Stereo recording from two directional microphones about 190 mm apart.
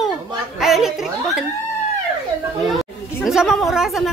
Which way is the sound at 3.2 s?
Centre (ahead or behind).